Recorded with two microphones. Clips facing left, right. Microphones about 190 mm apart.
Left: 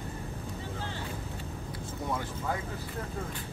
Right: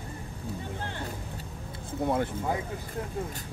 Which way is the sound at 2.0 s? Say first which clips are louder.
Right 7 dB; 55° right (ahead or behind).